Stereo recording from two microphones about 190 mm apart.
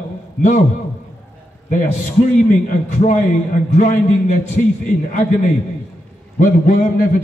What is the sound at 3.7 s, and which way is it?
Speech, 40° left (ahead or behind).